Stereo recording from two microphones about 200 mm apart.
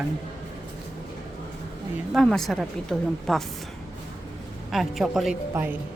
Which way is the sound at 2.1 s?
Centre (ahead or behind).